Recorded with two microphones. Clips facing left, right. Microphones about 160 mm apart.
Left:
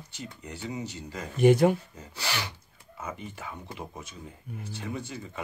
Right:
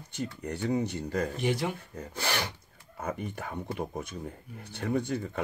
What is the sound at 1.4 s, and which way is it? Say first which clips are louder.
Speech: left 15 dB; 50° left (ahead or behind).